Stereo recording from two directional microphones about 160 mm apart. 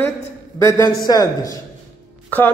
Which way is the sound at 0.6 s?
20° left (ahead or behind).